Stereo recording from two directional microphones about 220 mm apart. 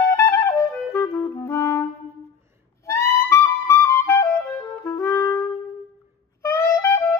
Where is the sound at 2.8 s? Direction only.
10° left (ahead or behind).